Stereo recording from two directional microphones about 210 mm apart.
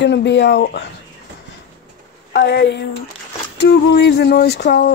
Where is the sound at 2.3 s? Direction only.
55° left (ahead or behind).